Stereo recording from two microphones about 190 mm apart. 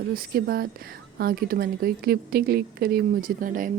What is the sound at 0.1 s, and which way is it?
Speech, 50° right (ahead or behind).